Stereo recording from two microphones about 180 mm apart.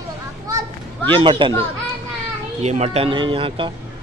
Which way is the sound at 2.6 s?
40° right (ahead or behind).